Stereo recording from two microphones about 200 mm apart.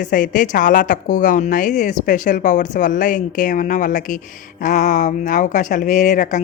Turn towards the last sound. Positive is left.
turn(degrees=40)  # may be behind; listen again after turning